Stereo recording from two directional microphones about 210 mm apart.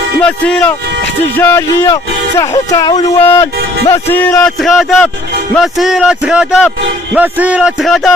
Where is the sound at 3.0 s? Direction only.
30° left (ahead or behind).